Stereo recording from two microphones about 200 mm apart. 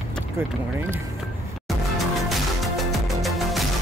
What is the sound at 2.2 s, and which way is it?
Music, centre (ahead or behind).